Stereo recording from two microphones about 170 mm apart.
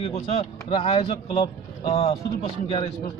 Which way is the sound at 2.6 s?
30° left (ahead or behind).